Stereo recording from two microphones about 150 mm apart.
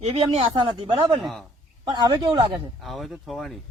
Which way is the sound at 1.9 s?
25° right (ahead or behind).